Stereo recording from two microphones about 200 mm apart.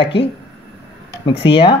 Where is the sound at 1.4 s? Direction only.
20° left (ahead or behind).